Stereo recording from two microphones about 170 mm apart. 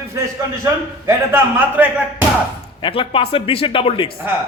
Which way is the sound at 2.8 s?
30° left (ahead or behind).